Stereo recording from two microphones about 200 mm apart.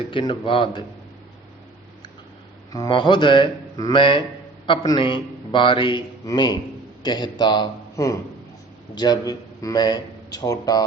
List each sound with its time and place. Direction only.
0.1 s a man's voice: 25° left (ahead or behind)
2.7 s a man's voice: 20° left (ahead or behind)